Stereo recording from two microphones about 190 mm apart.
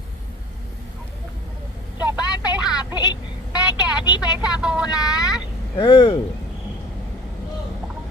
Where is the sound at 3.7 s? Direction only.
20° left (ahead or behind).